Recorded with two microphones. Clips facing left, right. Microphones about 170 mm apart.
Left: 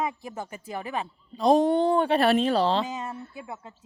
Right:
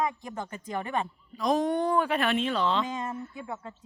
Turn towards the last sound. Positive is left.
turn(degrees=10)  # may be behind; listen again after turning